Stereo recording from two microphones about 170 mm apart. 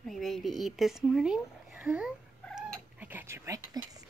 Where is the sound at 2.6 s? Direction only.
10° right (ahead or behind).